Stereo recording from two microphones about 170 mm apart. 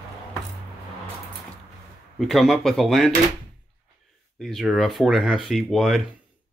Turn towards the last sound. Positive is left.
turn(degrees=0)  # may be behind; listen again after turning